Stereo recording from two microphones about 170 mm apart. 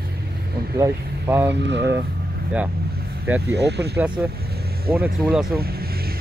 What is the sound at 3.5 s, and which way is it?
Speech, 80° right.